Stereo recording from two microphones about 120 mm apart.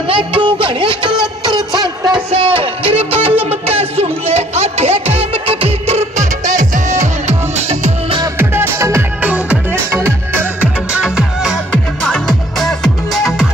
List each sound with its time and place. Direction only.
0.1 s a sound: 45° right (ahead or behind)
1.8 s music: 35° right (ahead or behind)
2.3 s music: 50° right (ahead or behind); by 7.9 s 65° right (ahead or behind)
8.4 s music: 20° right (ahead or behind)
9.2 s music: 10° right (ahead or behind)
11.7 s music: 5° left (ahead or behind)